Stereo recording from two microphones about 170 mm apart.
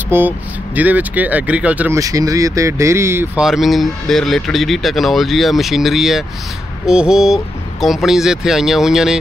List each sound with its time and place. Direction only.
0.1 s speech: 15° right (ahead or behind)
2.0 s speech: 20° right (ahead or behind)
3.4 s speech: centre (ahead or behind)